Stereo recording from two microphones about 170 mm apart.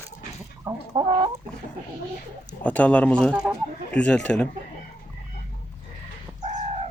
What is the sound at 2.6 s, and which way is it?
Speech, 10° left (ahead or behind).